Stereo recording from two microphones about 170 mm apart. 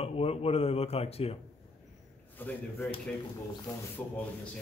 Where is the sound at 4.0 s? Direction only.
10° left (ahead or behind).